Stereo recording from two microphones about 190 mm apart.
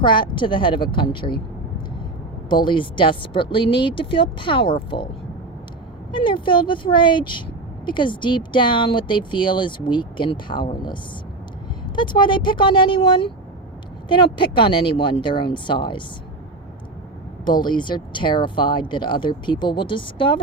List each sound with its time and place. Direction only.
0.0 s speech: 25° left (ahead or behind)
2.6 s speech: 25° left (ahead or behind)
6.1 s speech: 25° left (ahead or behind)
11.9 s speech: 25° left (ahead or behind)
14.3 s speech: 25° left (ahead or behind)
17.4 s speech: 25° left (ahead or behind)